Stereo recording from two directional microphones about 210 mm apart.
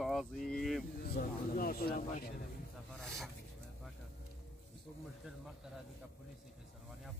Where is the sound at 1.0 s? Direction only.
45° left (ahead or behind).